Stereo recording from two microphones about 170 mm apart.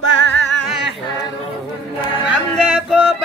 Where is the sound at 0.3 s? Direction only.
90° left.